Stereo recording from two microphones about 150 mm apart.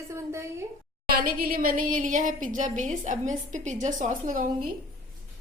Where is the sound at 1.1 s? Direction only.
75° right (ahead or behind); by 4.5 s 60° right (ahead or behind).